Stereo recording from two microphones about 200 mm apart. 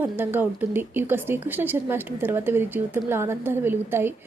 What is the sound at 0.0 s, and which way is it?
Speech, 10° right (ahead or behind).